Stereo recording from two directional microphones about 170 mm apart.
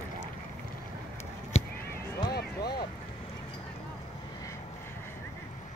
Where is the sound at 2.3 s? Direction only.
70° left (ahead or behind).